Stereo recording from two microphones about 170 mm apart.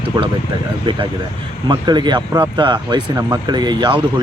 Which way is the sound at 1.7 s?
25° right (ahead or behind).